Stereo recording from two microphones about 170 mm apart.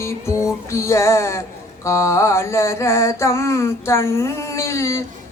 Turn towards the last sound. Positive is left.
turn(degrees=15)  # may be behind; listen again after turning